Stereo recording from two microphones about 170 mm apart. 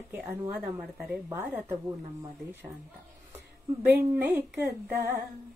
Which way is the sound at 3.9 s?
10° right (ahead or behind).